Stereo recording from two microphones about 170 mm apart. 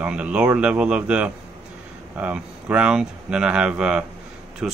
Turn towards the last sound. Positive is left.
turn(degrees=-5)  # may be behind; listen again after turning